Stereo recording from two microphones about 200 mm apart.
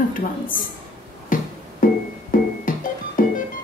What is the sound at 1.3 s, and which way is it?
Music, 45° left (ahead or behind).